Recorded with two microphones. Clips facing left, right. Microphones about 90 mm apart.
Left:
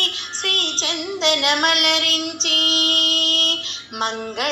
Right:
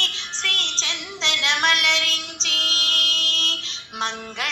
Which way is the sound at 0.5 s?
55° left (ahead or behind).